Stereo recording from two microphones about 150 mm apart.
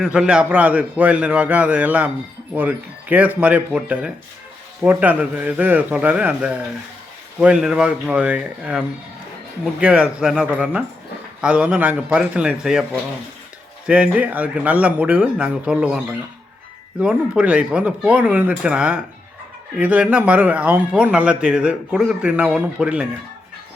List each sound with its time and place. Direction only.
0.0 s speech: 5° right (ahead or behind)
9.8 s speech: 5° right (ahead or behind)
13.8 s speech: 10° right (ahead or behind)
17.0 s speech: 5° right (ahead or behind)